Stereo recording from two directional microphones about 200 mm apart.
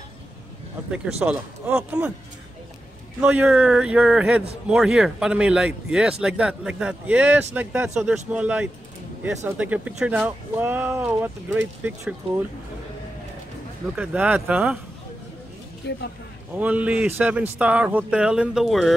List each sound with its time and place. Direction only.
0.9 s speech: 5° right (ahead or behind)
3.2 s a man's voice: 5° right (ahead or behind)
13.9 s speech: 5° right (ahead or behind)
15.8 s speech: 60° left (ahead or behind)
16.5 s speech: 10° right (ahead or behind)